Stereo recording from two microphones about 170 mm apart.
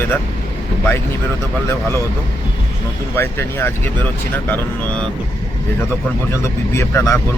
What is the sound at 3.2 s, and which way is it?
Speech, 15° left (ahead or behind).